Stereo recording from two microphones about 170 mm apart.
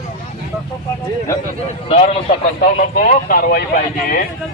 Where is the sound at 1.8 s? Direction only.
40° left (ahead or behind).